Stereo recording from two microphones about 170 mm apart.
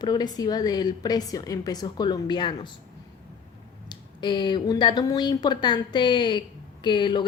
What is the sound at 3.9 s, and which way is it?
A woman's voice, 25° left (ahead or behind).